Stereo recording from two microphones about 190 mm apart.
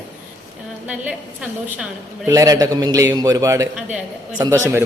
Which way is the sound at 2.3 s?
20° right (ahead or behind).